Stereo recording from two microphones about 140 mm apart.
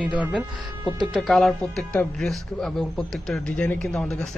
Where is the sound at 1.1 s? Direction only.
Centre (ahead or behind).